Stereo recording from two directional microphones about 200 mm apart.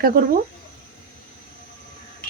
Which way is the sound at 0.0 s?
45° right (ahead or behind).